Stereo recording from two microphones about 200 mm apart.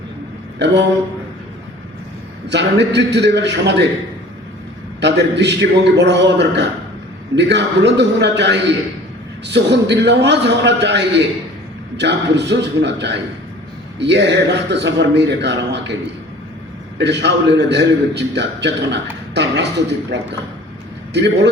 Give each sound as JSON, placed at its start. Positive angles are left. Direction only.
{"t": 0.6, "sound": "a man's voice", "side_deg": -60}
{"t": 2.5, "sound": "a man's voice", "side_deg": -60}
{"t": 4.9, "sound": "a man's voice", "side_deg": -60}
{"t": 17.0, "sound": "a man's voice", "side_deg": -60}